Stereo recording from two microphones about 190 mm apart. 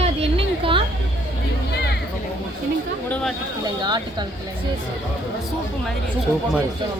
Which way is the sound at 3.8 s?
20° right (ahead or behind).